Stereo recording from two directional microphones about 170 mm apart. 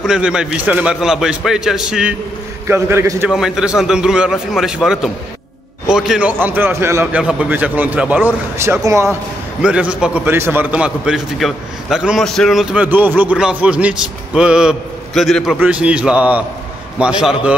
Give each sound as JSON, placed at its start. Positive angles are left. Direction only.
{"t": 0.0, "sound": "a man's voice", "side_deg": -5}
{"t": 2.7, "sound": "a man's voice", "side_deg": -15}
{"t": 3.3, "sound": "a man's voice", "side_deg": 0}
{"t": 9.6, "sound": "a man's voice", "side_deg": -5}